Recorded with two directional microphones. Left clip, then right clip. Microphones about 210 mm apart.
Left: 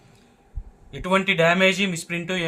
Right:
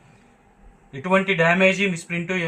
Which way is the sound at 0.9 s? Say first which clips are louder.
Right 1 dB; 55° left (ahead or behind).